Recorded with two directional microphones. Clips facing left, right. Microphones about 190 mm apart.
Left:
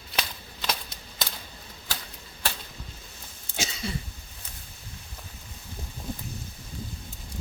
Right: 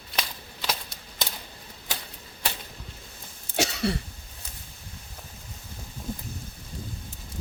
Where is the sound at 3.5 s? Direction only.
70° right (ahead or behind).